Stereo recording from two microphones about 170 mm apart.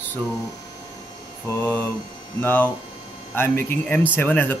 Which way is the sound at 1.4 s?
10° left (ahead or behind).